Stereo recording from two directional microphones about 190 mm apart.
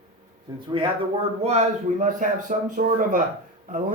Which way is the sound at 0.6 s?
25° right (ahead or behind).